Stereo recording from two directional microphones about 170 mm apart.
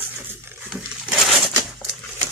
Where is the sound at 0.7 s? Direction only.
Centre (ahead or behind).